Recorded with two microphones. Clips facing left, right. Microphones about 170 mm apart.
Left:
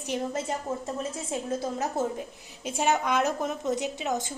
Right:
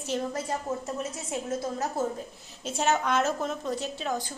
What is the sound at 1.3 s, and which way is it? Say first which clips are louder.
Speech: even; 30° left (ahead or behind).